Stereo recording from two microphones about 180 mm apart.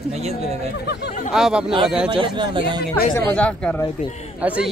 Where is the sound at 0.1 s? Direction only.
35° right (ahead or behind).